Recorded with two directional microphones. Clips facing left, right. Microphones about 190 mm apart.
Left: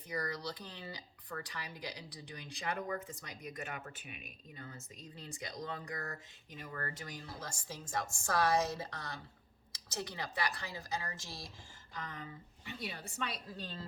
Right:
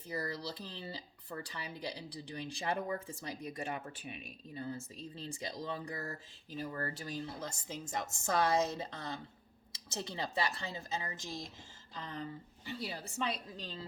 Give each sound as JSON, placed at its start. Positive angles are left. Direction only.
{"t": 0.1, "sound": "speech", "side_deg": -30}
{"t": 11.9, "sound": "a woman's voice", "side_deg": -30}
{"t": 13.6, "sound": "a woman's voice", "side_deg": -15}